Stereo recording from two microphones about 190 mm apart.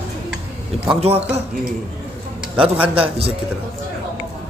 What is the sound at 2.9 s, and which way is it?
Speech, 30° right (ahead or behind).